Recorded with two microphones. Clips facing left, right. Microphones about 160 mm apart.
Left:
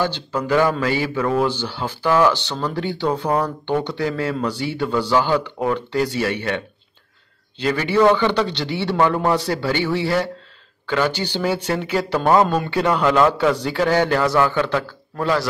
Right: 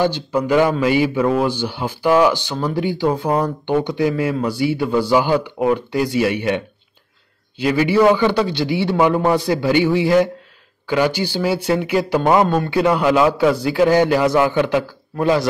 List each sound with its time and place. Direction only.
0.0 s a man's voice: 10° right (ahead or behind)